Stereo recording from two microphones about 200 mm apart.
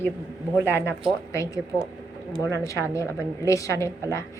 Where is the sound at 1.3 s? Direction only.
15° left (ahead or behind).